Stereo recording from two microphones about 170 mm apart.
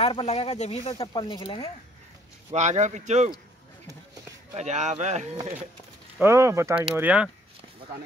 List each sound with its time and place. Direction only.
0.0 s speech: 35° left (ahead or behind)
0.9 s speech: 25° left (ahead or behind)
2.5 s speech: 45° right (ahead or behind)
4.6 s speech: 45° right (ahead or behind)
6.1 s speech: 15° right (ahead or behind)